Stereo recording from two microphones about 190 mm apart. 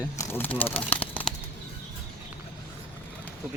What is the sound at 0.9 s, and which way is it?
Bird, 10° left (ahead or behind).